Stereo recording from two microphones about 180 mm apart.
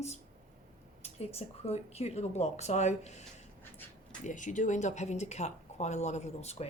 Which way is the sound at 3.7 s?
10° left (ahead or behind).